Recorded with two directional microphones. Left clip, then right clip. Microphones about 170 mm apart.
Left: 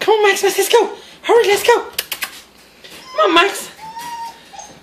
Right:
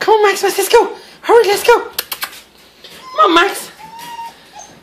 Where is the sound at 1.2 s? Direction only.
5° right (ahead or behind).